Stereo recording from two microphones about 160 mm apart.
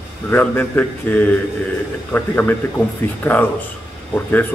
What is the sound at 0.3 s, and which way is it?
A man's voice, 10° left (ahead or behind).